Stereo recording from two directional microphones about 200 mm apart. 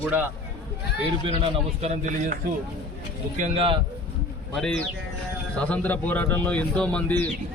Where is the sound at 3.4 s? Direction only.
30° right (ahead or behind).